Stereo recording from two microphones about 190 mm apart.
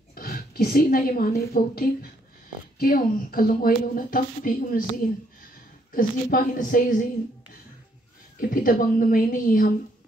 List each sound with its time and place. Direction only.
0.1 s a woman's voice: 50° left (ahead or behind)
5.9 s a woman's voice: 45° left (ahead or behind)
8.4 s a woman's voice: 45° left (ahead or behind)